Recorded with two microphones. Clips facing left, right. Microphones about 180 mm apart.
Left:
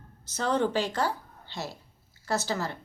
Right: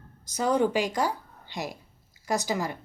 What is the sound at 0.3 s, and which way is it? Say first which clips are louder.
A woman's voice: right 3 dB; 10° right (ahead or behind).